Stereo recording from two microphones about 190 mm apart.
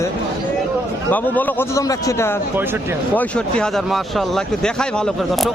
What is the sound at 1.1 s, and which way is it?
A man's voice, 10° left (ahead or behind).